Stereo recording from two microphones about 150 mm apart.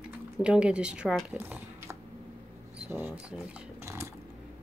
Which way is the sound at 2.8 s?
15° right (ahead or behind).